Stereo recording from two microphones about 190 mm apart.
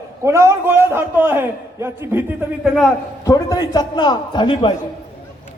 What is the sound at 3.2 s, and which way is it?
A man's voice, 20° left (ahead or behind).